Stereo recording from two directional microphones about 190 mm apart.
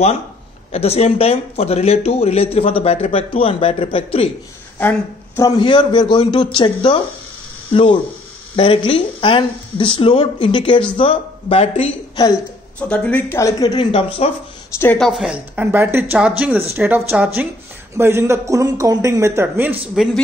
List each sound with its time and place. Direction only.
0.7 s speech: 30° left (ahead or behind)
4.7 s a woman's voice: 10° left (ahead or behind)
5.6 s speech: 25° left (ahead or behind)
12.7 s speech: 5° left (ahead or behind); by 14.3 s 25° left (ahead or behind)
14.8 s a woman's voice: 5° left (ahead or behind)